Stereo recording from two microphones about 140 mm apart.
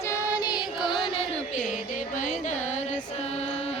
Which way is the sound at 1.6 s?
65° left (ahead or behind).